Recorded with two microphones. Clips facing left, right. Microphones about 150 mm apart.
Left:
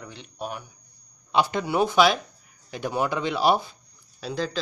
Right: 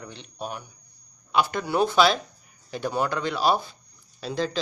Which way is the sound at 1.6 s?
15° left (ahead or behind).